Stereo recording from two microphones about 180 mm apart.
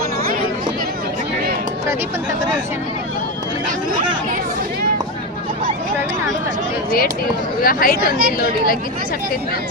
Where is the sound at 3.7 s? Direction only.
45° right (ahead or behind).